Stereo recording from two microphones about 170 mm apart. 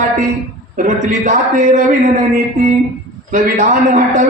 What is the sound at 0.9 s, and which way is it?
Speech, 45° right (ahead or behind).